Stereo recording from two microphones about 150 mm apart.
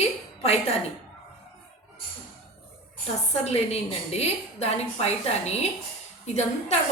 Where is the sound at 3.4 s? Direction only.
45° left (ahead or behind).